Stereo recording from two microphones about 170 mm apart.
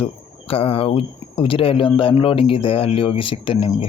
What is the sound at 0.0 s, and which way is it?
Speech, 35° left (ahead or behind).